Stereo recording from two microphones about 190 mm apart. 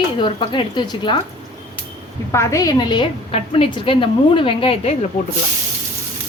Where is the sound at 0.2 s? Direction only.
25° left (ahead or behind).